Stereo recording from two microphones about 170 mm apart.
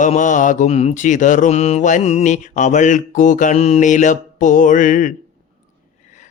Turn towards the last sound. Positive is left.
turn(degrees=50)  # may be behind; listen again after turning